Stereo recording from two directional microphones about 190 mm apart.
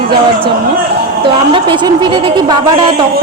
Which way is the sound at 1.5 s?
25° right (ahead or behind).